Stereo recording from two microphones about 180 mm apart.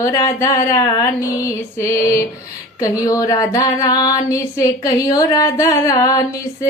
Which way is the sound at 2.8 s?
20° left (ahead or behind).